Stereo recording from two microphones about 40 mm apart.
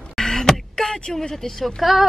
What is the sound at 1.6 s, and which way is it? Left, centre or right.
Speech, centre.